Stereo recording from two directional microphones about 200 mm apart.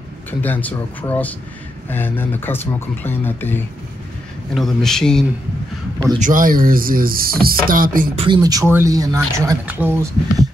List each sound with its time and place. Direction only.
0.3 s speech: 10° left (ahead or behind)
6.1 s speech: 40° right (ahead or behind)
8.2 s speech: 20° right (ahead or behind)